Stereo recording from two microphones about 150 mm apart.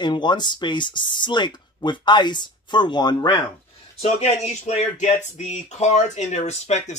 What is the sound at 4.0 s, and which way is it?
Speech, 45° left (ahead or behind).